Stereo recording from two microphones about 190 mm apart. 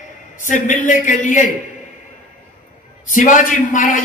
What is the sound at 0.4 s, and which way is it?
A man's voice, 40° left (ahead or behind).